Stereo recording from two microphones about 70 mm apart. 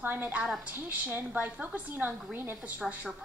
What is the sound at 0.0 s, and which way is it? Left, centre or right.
A woman's voice, right.